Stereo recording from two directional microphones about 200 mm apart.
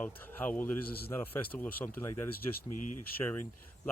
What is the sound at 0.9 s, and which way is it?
Speech, 50° left (ahead or behind).